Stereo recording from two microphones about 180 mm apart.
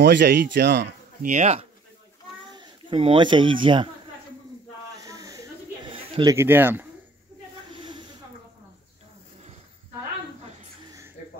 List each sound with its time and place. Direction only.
0.0 s speech: 75° right (ahead or behind)
1.2 s speech: 40° right (ahead or behind)
2.5 s speech: 25° right (ahead or behind)
5.0 s a sound: 20° right (ahead or behind)
6.3 s speech: 10° right (ahead or behind)
7.7 s snake: 25° right (ahead or behind)